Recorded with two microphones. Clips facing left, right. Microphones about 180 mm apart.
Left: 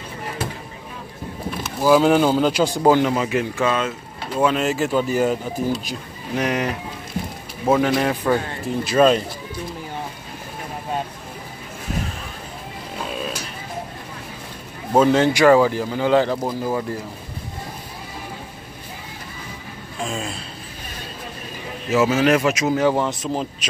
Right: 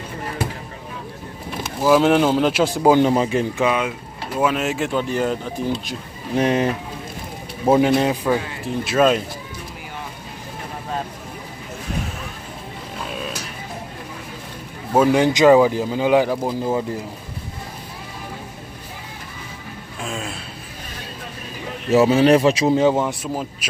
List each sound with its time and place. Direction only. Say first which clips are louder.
1.8 s speech: even; centre (ahead or behind)
3.0 s speech: right 3 dB; 30° right (ahead or behind)
3.5 s speech: right 1 dB; 15° right (ahead or behind)
4.4 s speech: left 1 dB; 5° right (ahead or behind)
6.3 s speech: right 4 dB; 30° right (ahead or behind)
7.7 s speech: right 2 dB; 25° right (ahead or behind)
8.1 s speech: even; 10° right (ahead or behind)
15.0 s speech: even; 10° right (ahead or behind)
20.0 s a sound: left 2 dB; centre (ahead or behind)
21.9 s speech: right 3 dB; 35° right (ahead or behind)
22.8 s speech: right 1 dB; 15° right (ahead or behind)